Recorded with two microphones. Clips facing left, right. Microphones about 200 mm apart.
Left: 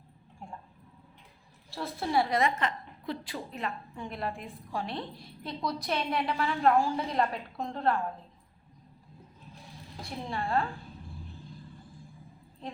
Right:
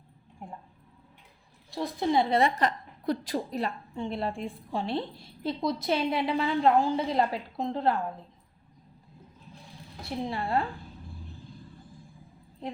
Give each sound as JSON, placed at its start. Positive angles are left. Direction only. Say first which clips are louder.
{"t": 1.7, "sound": "a woman's voice", "louder": "right 3 dB", "side_deg": -20}
{"t": 2.4, "sound": "a woman's voice", "louder": "right 3 dB", "side_deg": -40}
{"t": 10.2, "sound": "a woman's voice", "louder": "right 1 dB", "side_deg": -20}